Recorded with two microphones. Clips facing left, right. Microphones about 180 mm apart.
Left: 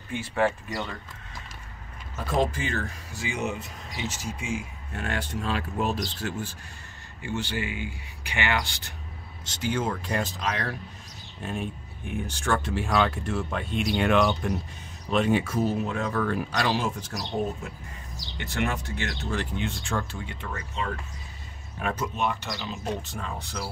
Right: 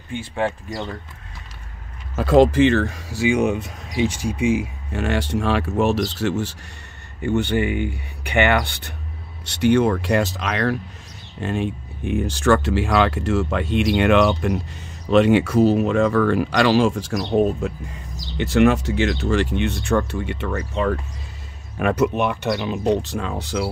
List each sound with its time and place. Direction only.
0.1 s speech: 30° right (ahead or behind)
2.1 s speech: 90° right
7.2 s speech: 60° right (ahead or behind); by 20.6 s 75° right (ahead or behind)
21.7 s speech: 80° right